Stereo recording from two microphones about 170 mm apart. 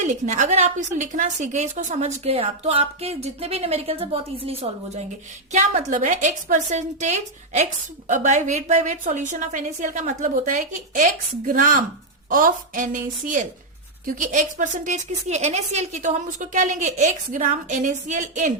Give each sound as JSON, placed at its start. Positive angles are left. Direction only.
{"t": 0.0, "sound": "a woman's voice", "side_deg": -45}